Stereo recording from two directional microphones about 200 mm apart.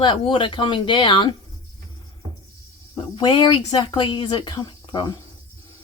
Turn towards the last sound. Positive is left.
turn(degrees=20)  # may be behind; listen again after turning